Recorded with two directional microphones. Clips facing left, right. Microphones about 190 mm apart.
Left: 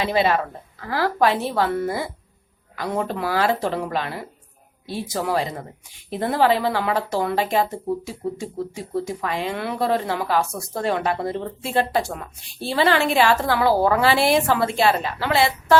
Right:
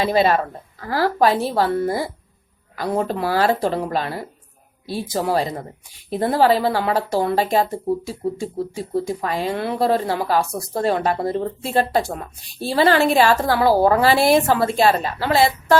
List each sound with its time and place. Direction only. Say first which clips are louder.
0.0 s a woman's voice: right 3 dB; 40° right (ahead or behind)